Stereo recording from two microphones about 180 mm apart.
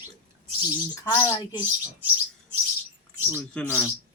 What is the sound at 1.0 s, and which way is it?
Speech, 25° left (ahead or behind).